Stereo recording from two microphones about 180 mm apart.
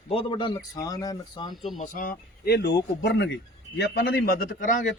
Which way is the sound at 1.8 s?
50° left (ahead or behind).